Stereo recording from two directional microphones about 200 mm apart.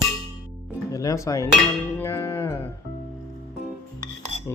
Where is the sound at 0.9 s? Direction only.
15° left (ahead or behind).